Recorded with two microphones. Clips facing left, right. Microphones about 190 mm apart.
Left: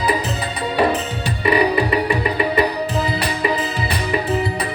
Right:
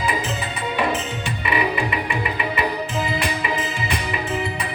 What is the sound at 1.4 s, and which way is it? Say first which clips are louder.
Music: left 7 dB; 35° left (ahead or behind).